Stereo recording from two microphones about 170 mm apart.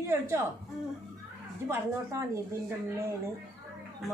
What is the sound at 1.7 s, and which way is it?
Speech, 15° right (ahead or behind).